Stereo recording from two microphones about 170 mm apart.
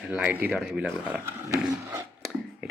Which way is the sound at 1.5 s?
20° right (ahead or behind).